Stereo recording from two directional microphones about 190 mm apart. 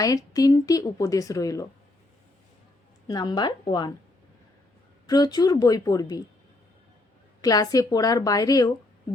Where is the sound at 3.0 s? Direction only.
20° left (ahead or behind).